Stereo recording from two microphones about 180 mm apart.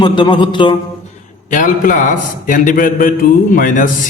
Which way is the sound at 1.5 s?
45° left (ahead or behind).